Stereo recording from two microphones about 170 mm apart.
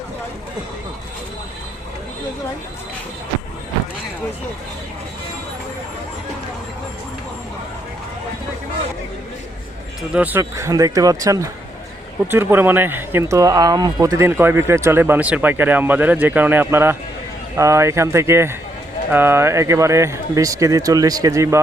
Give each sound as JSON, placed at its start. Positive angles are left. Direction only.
{"t": 10.1, "sound": "speech", "side_deg": -10}